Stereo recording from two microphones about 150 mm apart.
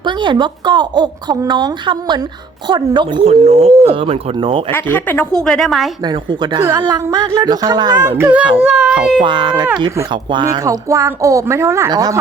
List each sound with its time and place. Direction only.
0.0 s a woman's voice: 30° right (ahead or behind)
3.2 s speech: 45° right (ahead or behind)
4.7 s a woman's voice: 15° left (ahead or behind)
6.1 s a woman's voice: 30° right (ahead or behind)
6.6 s a woman's voice: 20° right (ahead or behind)
8.5 s a woman's voice: 5° right (ahead or behind)
9.2 s a woman's voice: 30° right (ahead or behind)